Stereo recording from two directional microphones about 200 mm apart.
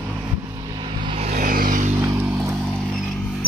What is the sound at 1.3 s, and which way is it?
Vehicle, 45° right (ahead or behind).